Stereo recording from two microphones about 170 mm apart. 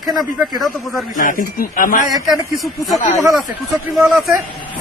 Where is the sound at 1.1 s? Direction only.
55° left (ahead or behind).